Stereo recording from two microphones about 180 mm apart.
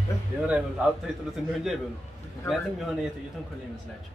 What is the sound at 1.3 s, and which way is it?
A man's voice, centre (ahead or behind).